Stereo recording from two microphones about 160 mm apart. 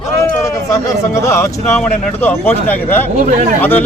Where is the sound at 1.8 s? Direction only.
5° left (ahead or behind).